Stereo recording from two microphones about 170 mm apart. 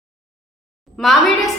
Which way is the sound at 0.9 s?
Centre (ahead or behind).